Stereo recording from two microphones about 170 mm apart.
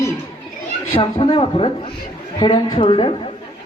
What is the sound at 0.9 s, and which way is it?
A man's voice, 30° left (ahead or behind).